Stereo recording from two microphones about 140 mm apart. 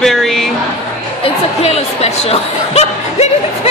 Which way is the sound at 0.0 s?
5° left (ahead or behind).